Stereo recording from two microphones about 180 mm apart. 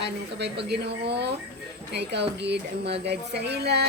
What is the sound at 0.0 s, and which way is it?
A woman's voice, 70° right (ahead or behind).